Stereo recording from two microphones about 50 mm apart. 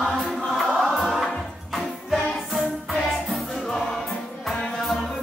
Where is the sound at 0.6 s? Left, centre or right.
Centre.